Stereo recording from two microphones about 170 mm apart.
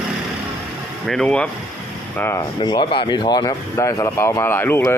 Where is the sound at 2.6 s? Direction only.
25° left (ahead or behind).